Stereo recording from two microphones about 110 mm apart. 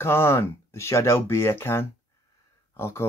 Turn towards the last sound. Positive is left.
turn(degrees=20)  # may be behind; listen again after turning